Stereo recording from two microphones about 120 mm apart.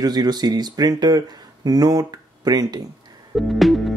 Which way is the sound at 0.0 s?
35° right (ahead or behind).